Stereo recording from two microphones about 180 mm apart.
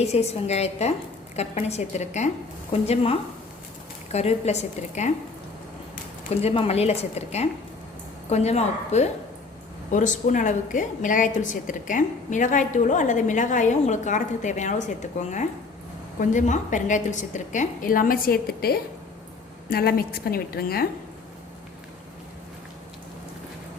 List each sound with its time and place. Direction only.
0.0 s a woman's voice: 35° left (ahead or behind)
6.3 s a woman's voice: 35° left (ahead or behind); by 20.9 s 55° left (ahead or behind)